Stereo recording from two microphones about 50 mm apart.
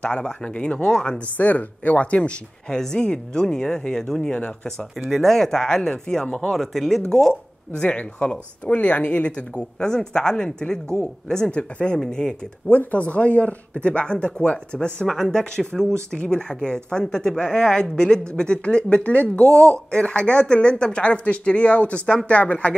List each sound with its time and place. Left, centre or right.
0.0 s speech: centre
1.3 s speech: left
2.8 s speech: centre
5.1 s speech: centre
6.5 s speech: centre
7.8 s speech: left
12.6 s speech: left
15.0 s speech: centre; by 22.8 s left